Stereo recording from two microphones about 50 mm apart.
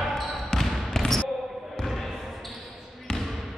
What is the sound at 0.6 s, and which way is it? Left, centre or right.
Trickle, centre.